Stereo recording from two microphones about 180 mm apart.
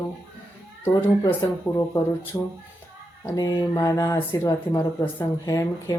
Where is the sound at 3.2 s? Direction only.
20° left (ahead or behind).